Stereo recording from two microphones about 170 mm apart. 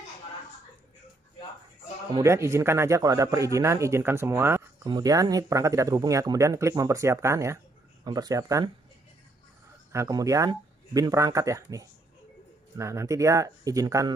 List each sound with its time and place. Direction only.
2.1 s speech: 15° right (ahead or behind)
9.9 s speech: 20° right (ahead or behind)